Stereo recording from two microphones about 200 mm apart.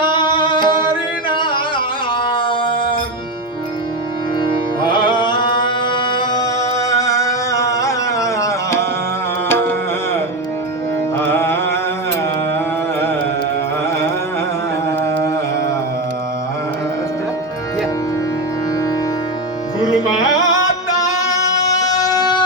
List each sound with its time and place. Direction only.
0.0 s music: 25° left (ahead or behind)
4.9 s music: 25° left (ahead or behind)
11.2 s carnatic music: 10° left (ahead or behind)
20.9 s music: 15° left (ahead or behind)